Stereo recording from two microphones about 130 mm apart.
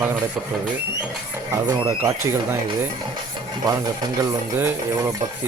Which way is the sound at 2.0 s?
20° right (ahead or behind).